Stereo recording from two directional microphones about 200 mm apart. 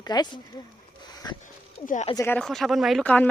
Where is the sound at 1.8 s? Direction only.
40° left (ahead or behind).